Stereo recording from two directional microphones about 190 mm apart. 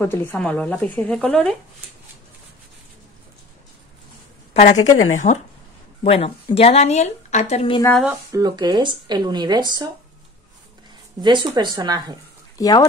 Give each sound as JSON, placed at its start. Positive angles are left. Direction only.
{"t": 0.0, "sound": "speech", "side_deg": 10}
{"t": 5.1, "sound": "a woman's voice", "side_deg": 40}
{"t": 7.9, "sound": "speech", "side_deg": -5}
{"t": 8.3, "sound": "speech", "side_deg": -20}
{"t": 11.1, "sound": "speech", "side_deg": -25}
{"t": 12.5, "sound": "speech", "side_deg": 20}